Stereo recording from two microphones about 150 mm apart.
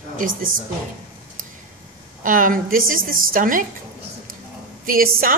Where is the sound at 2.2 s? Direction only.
65° right (ahead or behind).